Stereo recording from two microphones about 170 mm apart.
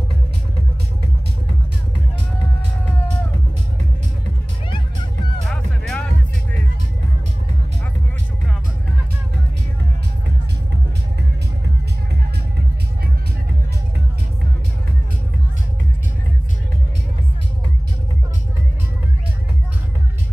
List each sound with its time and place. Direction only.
4.6 s music: 30° left (ahead or behind)
5.5 s music: 5° left (ahead or behind)